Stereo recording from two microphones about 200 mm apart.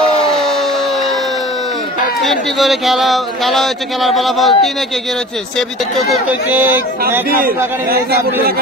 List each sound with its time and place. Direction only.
0.3 s a sound: centre (ahead or behind)
2.2 s speech: centre (ahead or behind)
5.6 s speech: centre (ahead or behind)
7.2 s a man's voice: 50° right (ahead or behind)